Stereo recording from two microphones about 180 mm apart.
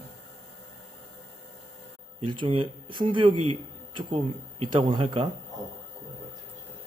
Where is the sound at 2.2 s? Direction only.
25° right (ahead or behind).